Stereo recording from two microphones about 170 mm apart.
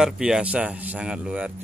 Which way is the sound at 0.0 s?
5° right (ahead or behind).